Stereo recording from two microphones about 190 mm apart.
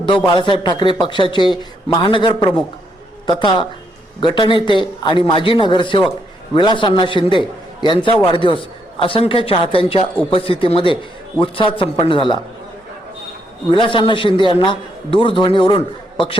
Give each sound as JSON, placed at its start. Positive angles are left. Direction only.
{"t": 0.3, "sound": "a man's voice", "side_deg": 25}
{"t": 13.7, "sound": "a man's voice", "side_deg": 25}